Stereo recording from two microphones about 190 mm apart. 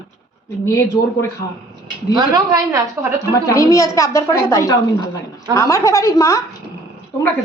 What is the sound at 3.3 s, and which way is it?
A woman's voice, 15° left (ahead or behind).